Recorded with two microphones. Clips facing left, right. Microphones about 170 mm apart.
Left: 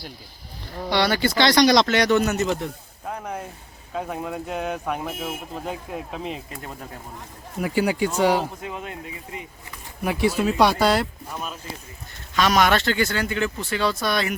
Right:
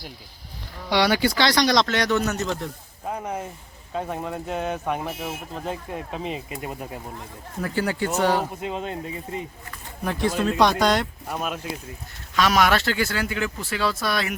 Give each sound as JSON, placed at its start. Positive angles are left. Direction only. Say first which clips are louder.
{"t": 0.9, "sound": "speech", "louder": "right 1 dB", "side_deg": -10}
{"t": 7.6, "sound": "speech", "louder": "left 3 dB", "side_deg": 15}
{"t": 8.6, "sound": "speech", "louder": "right 4 dB", "side_deg": -30}
{"t": 10.0, "sound": "speech", "louder": "left 2 dB", "side_deg": 10}
{"t": 11.3, "sound": "speech", "louder": "right 4 dB", "side_deg": -70}
{"t": 12.3, "sound": "speech", "louder": "left 1 dB", "side_deg": 0}